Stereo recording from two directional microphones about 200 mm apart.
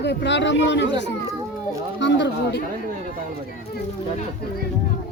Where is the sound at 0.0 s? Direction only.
60° left (ahead or behind).